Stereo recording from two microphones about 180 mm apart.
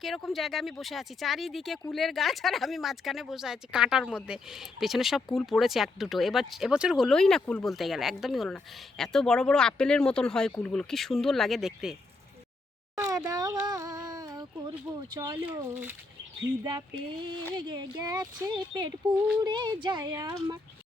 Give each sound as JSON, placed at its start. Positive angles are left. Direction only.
{"t": 0.0, "sound": "speech", "side_deg": 0}
{"t": 13.0, "sound": "speech", "side_deg": -15}
{"t": 13.7, "sound": "a sound", "side_deg": -20}
{"t": 15.1, "sound": "speech", "side_deg": -20}
{"t": 15.7, "sound": "speech", "side_deg": -10}
{"t": 16.6, "sound": "speech", "side_deg": -25}